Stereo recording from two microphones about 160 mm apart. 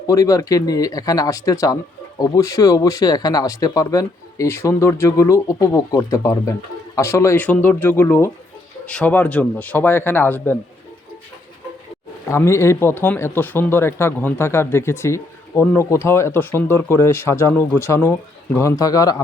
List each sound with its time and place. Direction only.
0.1 s speech: 20° left (ahead or behind)
12.3 s speech: 15° left (ahead or behind)